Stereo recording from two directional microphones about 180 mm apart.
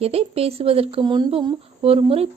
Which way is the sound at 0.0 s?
35° right (ahead or behind).